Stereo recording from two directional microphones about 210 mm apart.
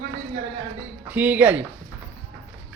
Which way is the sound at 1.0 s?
10° right (ahead or behind).